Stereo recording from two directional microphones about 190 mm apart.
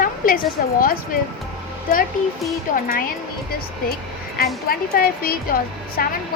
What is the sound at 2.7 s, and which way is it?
Speech, 45° left (ahead or behind).